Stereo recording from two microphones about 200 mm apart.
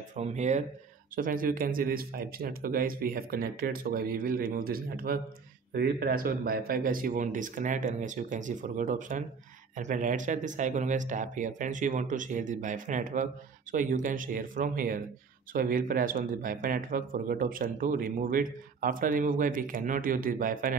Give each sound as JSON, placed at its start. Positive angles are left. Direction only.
{"t": 0.1, "sound": "speech", "side_deg": -35}